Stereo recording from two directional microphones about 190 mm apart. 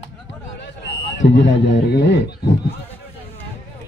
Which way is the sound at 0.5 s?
60° left (ahead or behind).